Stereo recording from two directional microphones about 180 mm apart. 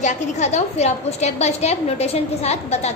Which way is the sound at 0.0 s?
40° left (ahead or behind).